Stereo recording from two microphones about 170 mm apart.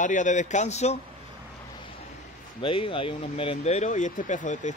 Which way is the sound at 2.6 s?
30° left (ahead or behind).